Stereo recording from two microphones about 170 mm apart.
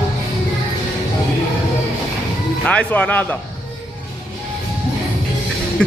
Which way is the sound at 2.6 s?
10° left (ahead or behind).